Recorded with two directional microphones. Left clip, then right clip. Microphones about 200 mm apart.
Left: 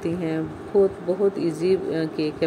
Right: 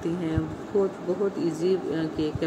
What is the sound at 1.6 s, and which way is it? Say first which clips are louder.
Speech: left 4 dB; 15° left (ahead or behind).